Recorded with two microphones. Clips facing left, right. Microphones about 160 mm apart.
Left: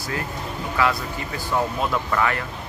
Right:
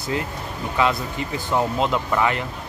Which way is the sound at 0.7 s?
20° right (ahead or behind).